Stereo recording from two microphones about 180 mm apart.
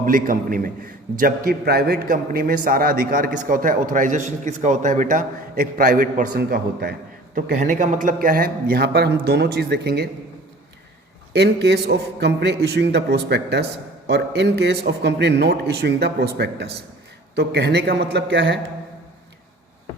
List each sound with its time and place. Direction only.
0.0 s a man's voice: 50° right (ahead or behind)
7.3 s a man's voice: 45° right (ahead or behind); by 10.1 s 65° right (ahead or behind)
11.3 s a man's voice: 70° right (ahead or behind)